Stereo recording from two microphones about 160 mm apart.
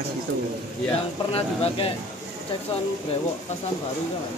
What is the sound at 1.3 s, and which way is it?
Speech, 35° left (ahead or behind).